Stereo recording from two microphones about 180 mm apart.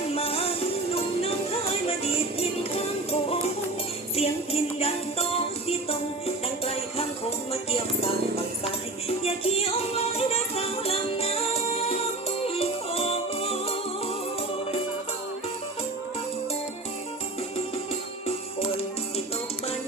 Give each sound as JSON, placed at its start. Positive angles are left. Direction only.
{"t": 0.1, "sound": "music", "side_deg": 35}
{"t": 1.9, "sound": "music", "side_deg": 35}
{"t": 9.0, "sound": "music", "side_deg": 35}